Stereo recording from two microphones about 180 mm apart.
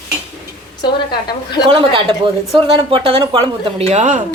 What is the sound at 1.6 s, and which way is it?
A woman's voice, 30° right (ahead or behind).